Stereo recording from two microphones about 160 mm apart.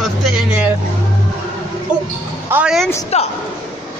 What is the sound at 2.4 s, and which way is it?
Speech, 10° right (ahead or behind).